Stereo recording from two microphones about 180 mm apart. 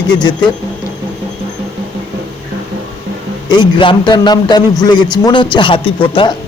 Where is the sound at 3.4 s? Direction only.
25° left (ahead or behind).